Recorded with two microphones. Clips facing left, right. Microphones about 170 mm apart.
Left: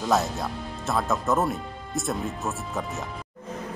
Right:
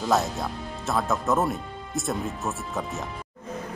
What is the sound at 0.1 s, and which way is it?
Speech, centre (ahead or behind).